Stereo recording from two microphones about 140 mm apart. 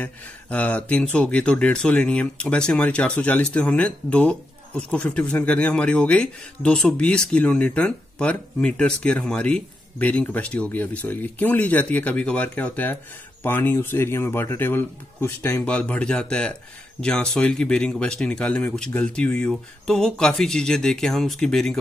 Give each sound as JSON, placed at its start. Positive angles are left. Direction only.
{"t": 0.0, "sound": "speech", "side_deg": 10}
{"t": 15.6, "sound": "speech", "side_deg": 10}